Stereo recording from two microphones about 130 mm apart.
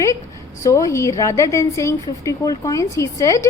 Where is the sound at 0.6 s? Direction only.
25° left (ahead or behind).